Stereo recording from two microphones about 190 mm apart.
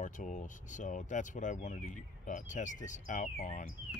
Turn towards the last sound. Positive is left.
turn(degrees=40)  # may be behind; listen again after turning